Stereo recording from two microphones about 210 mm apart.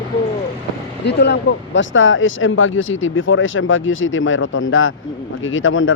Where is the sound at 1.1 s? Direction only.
55° left (ahead or behind).